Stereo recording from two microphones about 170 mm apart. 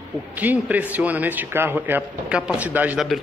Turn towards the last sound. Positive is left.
turn(degrees=-10)  # may be behind; listen again after turning